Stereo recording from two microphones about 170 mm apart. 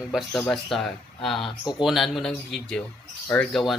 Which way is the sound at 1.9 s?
Centre (ahead or behind).